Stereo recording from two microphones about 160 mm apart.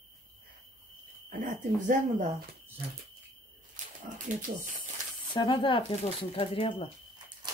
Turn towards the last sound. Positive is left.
turn(degrees=35)  # may be behind; listen again after turning